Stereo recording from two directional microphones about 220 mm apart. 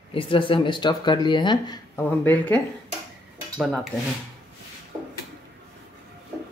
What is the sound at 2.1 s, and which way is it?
Speech, 10° left (ahead or behind).